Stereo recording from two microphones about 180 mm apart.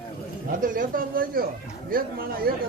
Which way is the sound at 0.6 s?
50° right (ahead or behind).